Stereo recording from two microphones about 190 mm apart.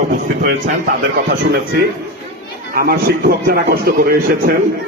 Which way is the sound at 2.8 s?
50° right (ahead or behind).